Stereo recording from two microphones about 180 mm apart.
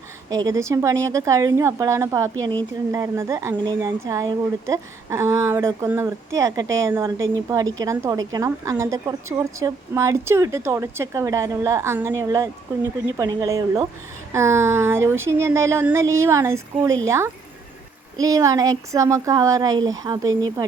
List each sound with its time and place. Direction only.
0.3 s a woman's voice: 20° right (ahead or behind)